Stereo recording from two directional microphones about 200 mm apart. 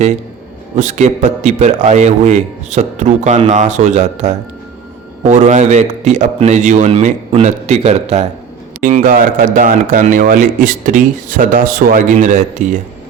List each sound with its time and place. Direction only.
0.8 s speech: 35° right (ahead or behind)